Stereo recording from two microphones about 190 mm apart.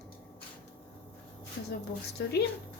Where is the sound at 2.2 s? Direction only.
60° left (ahead or behind).